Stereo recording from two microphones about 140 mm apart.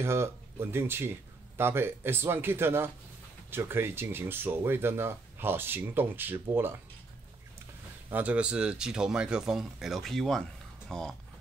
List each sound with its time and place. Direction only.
0.0 s speech: 20° right (ahead or behind)
8.1 s speech: 10° right (ahead or behind)